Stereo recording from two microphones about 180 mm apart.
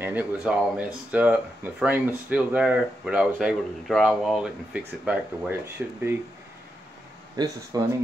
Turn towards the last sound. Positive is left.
turn(degrees=-20)  # may be behind; listen again after turning